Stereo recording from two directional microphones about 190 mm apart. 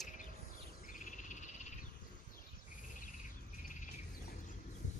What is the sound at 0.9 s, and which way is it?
Frog, 40° left (ahead or behind).